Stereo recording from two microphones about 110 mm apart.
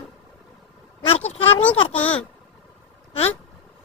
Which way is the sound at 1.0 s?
70° left (ahead or behind).